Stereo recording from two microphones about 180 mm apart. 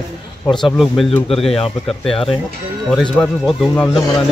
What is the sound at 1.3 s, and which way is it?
Speech, 30° left (ahead or behind).